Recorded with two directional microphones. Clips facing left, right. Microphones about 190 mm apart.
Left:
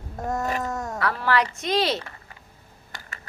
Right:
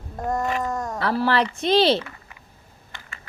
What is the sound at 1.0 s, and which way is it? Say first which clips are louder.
A woman's voice: right 2 dB; 30° right (ahead or behind).